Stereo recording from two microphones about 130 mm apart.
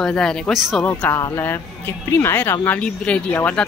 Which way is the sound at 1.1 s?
20° left (ahead or behind).